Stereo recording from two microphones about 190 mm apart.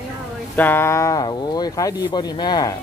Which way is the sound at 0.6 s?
10° left (ahead or behind).